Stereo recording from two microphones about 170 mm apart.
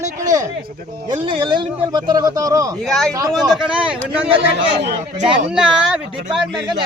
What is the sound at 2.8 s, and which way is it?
Speech, 5° left (ahead or behind).